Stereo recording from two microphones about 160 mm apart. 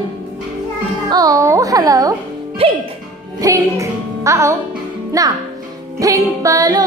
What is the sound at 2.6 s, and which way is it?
Speech, 35° right (ahead or behind).